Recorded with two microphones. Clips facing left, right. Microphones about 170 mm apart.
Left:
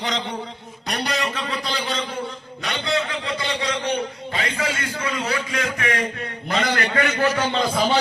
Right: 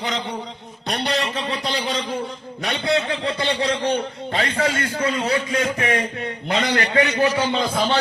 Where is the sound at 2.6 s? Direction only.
30° right (ahead or behind).